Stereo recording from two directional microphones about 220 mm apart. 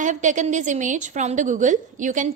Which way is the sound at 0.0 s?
35° right (ahead or behind).